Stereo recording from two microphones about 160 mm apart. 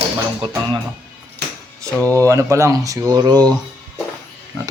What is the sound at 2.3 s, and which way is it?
Speech, 20° right (ahead or behind).